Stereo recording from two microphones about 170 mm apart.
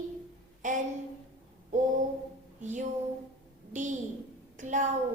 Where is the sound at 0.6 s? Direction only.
50° right (ahead or behind).